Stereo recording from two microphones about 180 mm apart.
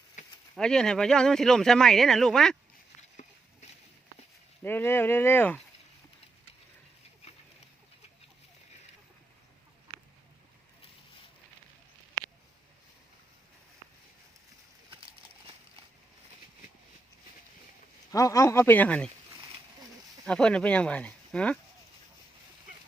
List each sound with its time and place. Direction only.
0.2 s a sound: 40° left (ahead or behind)
0.5 s speech: 5° left (ahead or behind)
4.6 s speech: 10° left (ahead or behind)
14.8 s a sound: 30° right (ahead or behind)
18.1 s speech: 20° left (ahead or behind)
20.2 s speech: 5° left (ahead or behind)